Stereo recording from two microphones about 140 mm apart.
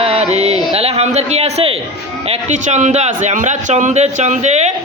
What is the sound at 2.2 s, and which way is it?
A man's voice, 55° right (ahead or behind).